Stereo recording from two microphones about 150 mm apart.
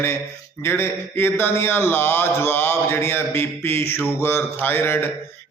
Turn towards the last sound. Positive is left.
turn(degrees=15)  # may be behind; listen again after turning